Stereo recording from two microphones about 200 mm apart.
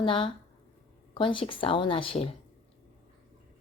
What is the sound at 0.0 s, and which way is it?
Speech, 25° left (ahead or behind).